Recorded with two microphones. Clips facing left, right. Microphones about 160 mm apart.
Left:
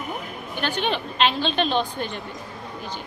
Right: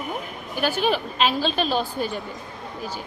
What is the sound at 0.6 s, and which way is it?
A woman's voice, 5° right (ahead or behind).